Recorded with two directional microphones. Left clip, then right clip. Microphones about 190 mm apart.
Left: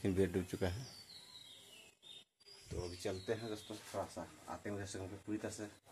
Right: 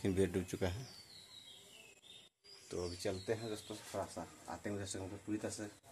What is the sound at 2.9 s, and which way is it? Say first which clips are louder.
Speech: even; 20° right (ahead or behind).